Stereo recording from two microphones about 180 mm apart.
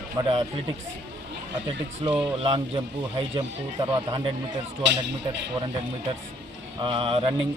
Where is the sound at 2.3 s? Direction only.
30° right (ahead or behind).